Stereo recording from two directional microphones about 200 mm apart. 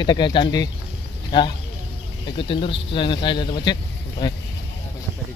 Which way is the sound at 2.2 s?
25° left (ahead or behind).